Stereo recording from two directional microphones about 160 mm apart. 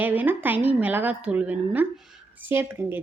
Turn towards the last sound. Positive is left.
turn(degrees=-15)  # may be behind; listen again after turning